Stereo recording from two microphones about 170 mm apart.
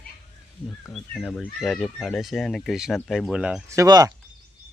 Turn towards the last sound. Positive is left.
turn(degrees=-20)  # may be behind; listen again after turning